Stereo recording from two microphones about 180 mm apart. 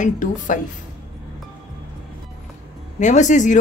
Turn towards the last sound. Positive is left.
turn(degrees=45)  # may be behind; listen again after turning